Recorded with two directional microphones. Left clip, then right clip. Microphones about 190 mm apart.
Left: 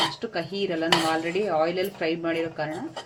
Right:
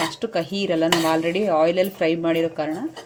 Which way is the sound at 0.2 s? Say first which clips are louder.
Right 4 dB; 45° right (ahead or behind).